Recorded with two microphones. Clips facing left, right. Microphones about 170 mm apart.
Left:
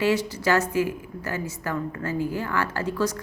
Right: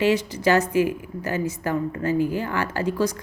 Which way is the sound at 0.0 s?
20° right (ahead or behind).